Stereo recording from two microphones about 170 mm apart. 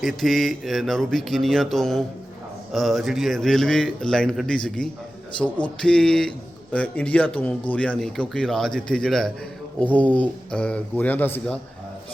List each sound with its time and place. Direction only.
0.0 s a man's voice: centre (ahead or behind)